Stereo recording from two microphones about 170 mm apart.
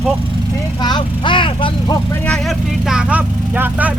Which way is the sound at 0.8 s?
25° left (ahead or behind).